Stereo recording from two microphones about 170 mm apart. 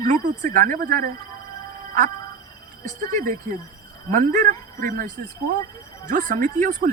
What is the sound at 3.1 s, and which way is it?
Speech, 55° right (ahead or behind).